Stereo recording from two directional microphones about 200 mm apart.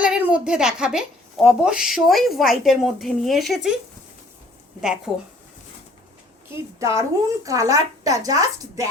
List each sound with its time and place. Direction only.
0.0 s speech: 5° right (ahead or behind)
4.8 s speech: 5° right (ahead or behind)
6.5 s a woman's voice: 15° right (ahead or behind)